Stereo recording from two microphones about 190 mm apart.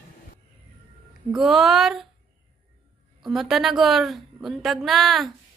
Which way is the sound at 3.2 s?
Centre (ahead or behind).